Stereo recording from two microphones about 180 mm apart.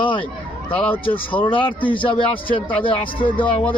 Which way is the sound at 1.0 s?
30° left (ahead or behind).